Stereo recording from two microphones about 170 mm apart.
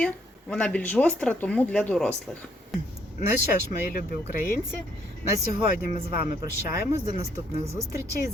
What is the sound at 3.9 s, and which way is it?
Speech, 55° left (ahead or behind).